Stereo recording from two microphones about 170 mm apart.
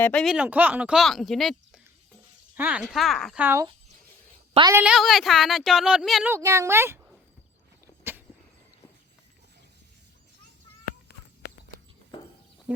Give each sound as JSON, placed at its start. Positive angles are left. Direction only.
{"t": 0.0, "sound": "speech", "side_deg": 5}
{"t": 3.4, "sound": "speech", "side_deg": -15}
{"t": 4.7, "sound": "speech", "side_deg": -5}
{"t": 6.3, "sound": "speech", "side_deg": -20}
{"t": 12.7, "sound": "speech", "side_deg": -5}